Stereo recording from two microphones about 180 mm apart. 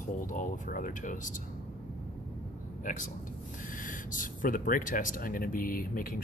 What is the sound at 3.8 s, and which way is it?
Speech, 45° left (ahead or behind).